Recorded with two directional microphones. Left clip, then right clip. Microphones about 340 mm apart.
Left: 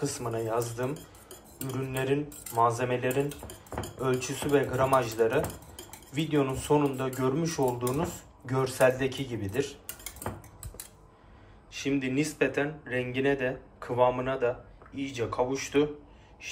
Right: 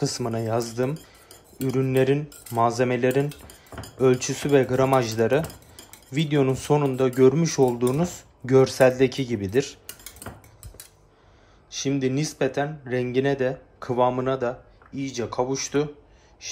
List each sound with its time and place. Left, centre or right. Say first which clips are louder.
0.0 s speech: right 5 dB; centre
1.7 s speech: right 9 dB; centre
11.7 s speech: right 4 dB; centre